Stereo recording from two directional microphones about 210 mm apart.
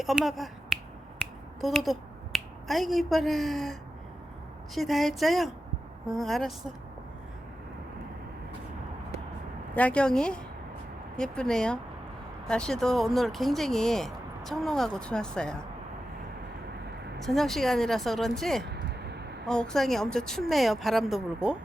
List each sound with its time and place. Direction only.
0.0 s speech: centre (ahead or behind)
9.7 s speech: 5° left (ahead or behind)
17.2 s speech: centre (ahead or behind)
18.6 s a sound: 50° right (ahead or behind)
19.5 s speech: 5° left (ahead or behind)